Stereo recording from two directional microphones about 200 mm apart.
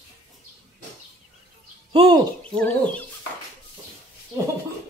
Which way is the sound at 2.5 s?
5° left (ahead or behind).